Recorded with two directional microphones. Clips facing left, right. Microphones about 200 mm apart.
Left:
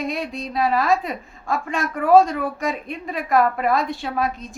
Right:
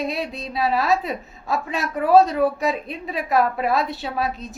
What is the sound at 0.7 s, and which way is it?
Speech, 5° right (ahead or behind).